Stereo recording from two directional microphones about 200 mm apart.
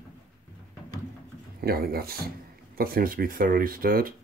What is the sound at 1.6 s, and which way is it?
Speech, 50° right (ahead or behind).